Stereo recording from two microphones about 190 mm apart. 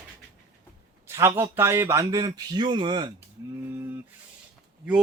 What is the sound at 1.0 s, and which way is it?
A man's voice, 15° right (ahead or behind).